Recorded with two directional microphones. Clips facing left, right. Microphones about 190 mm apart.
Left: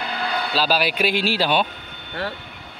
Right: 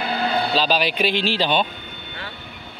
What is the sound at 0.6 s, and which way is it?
Speech, 5° left (ahead or behind).